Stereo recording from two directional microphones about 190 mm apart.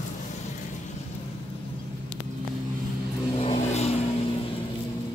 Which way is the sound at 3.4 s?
35° left (ahead or behind).